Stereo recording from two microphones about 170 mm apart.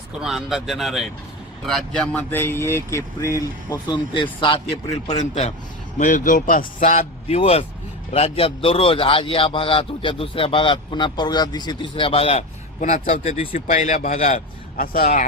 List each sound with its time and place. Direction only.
0.2 s a man's voice: centre (ahead or behind); by 5.5 s 40° left (ahead or behind)
6.0 s a man's voice: 50° left (ahead or behind)